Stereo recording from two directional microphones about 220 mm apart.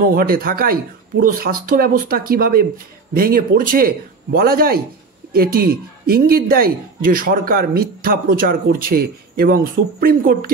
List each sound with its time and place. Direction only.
0.1 s speech: 40° right (ahead or behind)